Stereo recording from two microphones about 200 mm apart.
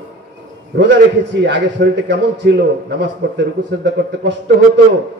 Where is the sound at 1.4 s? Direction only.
60° right (ahead or behind).